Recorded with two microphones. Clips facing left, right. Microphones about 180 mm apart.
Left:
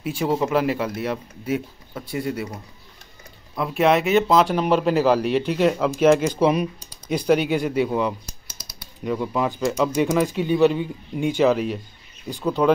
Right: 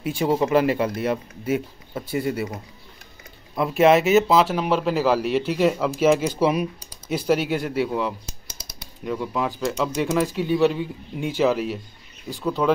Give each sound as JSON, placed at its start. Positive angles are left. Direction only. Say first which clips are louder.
{"t": 0.0, "sound": "speech", "louder": "right 1 dB", "side_deg": 0}
{"t": 8.5, "sound": "typing", "louder": "right 1 dB", "side_deg": -25}
{"t": 9.0, "sound": "speech", "louder": "left 2 dB", "side_deg": 0}